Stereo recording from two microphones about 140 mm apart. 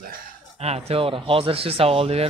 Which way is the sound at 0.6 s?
45° right (ahead or behind).